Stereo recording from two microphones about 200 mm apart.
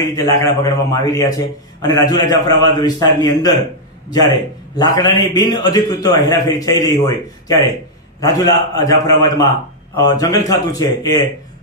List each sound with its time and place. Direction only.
0.1 s a man's voice: 15° left (ahead or behind)
9.9 s speech: 20° left (ahead or behind)